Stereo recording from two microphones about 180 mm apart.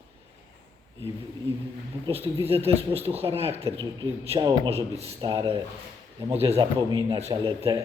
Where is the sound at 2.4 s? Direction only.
35° right (ahead or behind).